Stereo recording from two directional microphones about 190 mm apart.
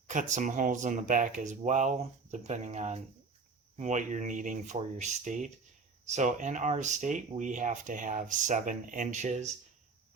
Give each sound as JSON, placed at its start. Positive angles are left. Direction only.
{"t": 0.1, "sound": "speech", "side_deg": -40}